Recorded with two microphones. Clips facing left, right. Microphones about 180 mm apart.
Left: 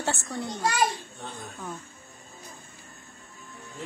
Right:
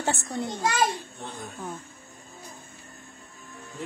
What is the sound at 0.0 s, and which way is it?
Speech, 15° right (ahead or behind).